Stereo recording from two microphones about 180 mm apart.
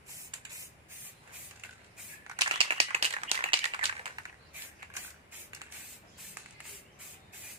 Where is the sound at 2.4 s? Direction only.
30° right (ahead or behind).